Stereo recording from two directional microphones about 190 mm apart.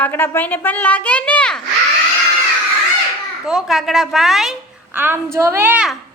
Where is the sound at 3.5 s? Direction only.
Centre (ahead or behind).